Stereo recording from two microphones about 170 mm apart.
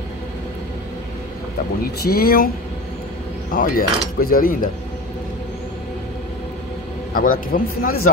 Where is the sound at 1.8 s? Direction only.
65° left (ahead or behind).